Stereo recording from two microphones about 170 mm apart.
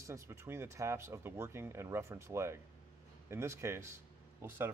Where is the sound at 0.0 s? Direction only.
15° right (ahead or behind).